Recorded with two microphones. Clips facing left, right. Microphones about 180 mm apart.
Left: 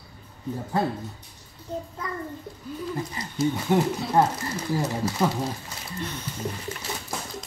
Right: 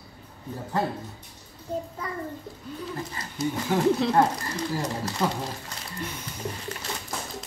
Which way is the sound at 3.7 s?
20° left (ahead or behind).